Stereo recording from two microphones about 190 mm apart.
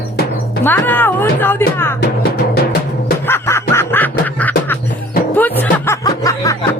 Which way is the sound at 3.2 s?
10° left (ahead or behind).